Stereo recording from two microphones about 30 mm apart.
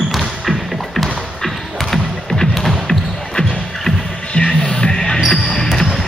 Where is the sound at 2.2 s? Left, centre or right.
Centre.